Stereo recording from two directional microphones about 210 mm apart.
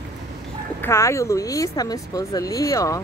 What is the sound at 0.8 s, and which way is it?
Speech, 15° left (ahead or behind).